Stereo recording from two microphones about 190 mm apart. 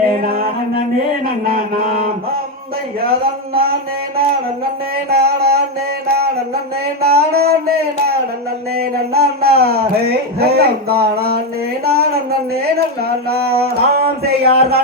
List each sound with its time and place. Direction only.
0.2 s music: 50° right (ahead or behind)
1.5 s speech: 50° right (ahead or behind)
3.0 s speech: 50° right (ahead or behind)
5.0 s a sound: 55° right (ahead or behind)
7.0 s music: 55° right (ahead or behind)
8.7 s a sound: 55° right (ahead or behind)
10.4 s speech: 55° right (ahead or behind)
13.3 s music: 55° right (ahead or behind)